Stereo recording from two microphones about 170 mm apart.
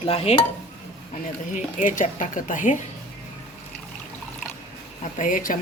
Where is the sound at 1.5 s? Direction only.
50° left (ahead or behind).